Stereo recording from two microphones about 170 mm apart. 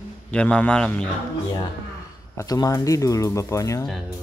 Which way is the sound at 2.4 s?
20° left (ahead or behind).